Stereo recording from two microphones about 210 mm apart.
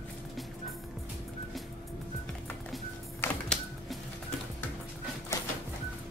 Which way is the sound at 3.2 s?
5° left (ahead or behind).